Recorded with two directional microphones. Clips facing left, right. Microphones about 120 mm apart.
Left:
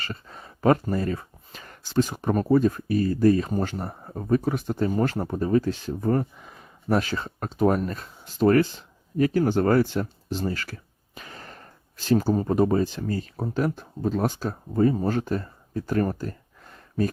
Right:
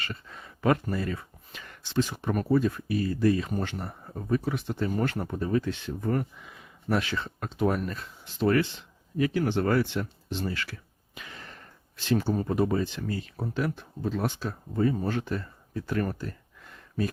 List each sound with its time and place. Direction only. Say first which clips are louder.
0.0 s speech: left 2 dB; 35° left (ahead or behind)
4.9 s speech: left 3 dB; 30° left (ahead or behind)